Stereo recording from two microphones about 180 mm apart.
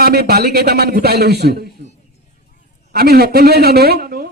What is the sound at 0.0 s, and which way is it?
A man's voice, 60° right (ahead or behind).